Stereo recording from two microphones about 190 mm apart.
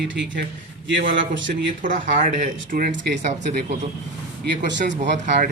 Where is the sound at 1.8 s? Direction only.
45° right (ahead or behind).